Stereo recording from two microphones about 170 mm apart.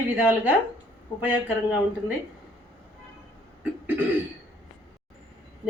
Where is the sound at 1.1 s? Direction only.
15° left (ahead or behind).